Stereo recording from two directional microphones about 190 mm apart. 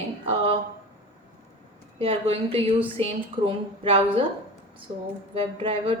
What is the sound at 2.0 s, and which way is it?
Speech, 30° right (ahead or behind).